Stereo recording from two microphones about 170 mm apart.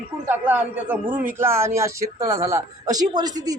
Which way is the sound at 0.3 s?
10° right (ahead or behind).